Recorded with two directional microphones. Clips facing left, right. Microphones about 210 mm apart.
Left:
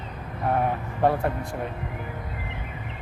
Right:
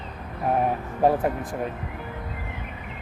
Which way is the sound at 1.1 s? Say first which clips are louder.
Right 2 dB; 15° right (ahead or behind).